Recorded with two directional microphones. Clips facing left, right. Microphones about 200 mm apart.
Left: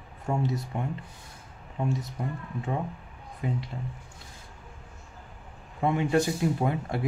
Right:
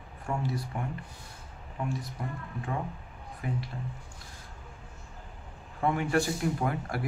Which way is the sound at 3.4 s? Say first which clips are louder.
Left 3 dB; 25° left (ahead or behind).